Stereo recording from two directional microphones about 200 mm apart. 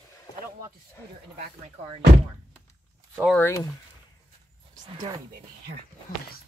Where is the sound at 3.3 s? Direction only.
15° left (ahead or behind).